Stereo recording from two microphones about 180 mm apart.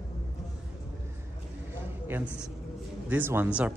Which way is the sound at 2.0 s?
10° right (ahead or behind).